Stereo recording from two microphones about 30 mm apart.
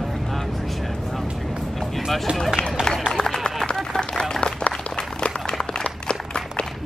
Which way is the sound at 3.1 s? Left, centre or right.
Centre.